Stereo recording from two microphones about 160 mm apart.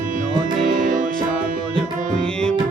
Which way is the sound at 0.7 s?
55° right (ahead or behind).